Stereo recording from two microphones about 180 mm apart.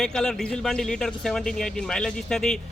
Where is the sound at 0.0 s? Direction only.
5° left (ahead or behind).